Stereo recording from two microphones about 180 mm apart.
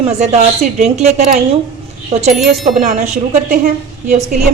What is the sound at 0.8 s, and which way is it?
A woman's voice, 40° right (ahead or behind).